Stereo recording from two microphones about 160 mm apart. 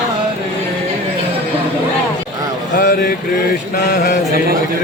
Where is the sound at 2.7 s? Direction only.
70° left (ahead or behind).